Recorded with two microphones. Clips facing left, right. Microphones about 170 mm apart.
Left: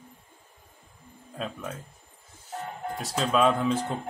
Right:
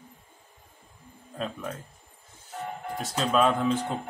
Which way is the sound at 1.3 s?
Centre (ahead or behind).